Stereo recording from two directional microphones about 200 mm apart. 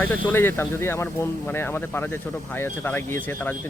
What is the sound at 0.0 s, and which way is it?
Speech, 10° left (ahead or behind).